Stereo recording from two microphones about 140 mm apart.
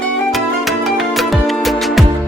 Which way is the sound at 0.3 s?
Centre (ahead or behind).